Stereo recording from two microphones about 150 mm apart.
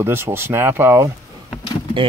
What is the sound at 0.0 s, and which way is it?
Speech, 15° right (ahead or behind).